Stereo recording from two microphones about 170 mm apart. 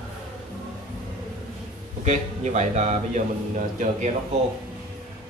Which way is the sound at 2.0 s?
40° right (ahead or behind).